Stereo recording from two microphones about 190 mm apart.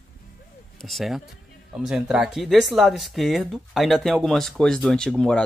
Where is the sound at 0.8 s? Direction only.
Centre (ahead or behind).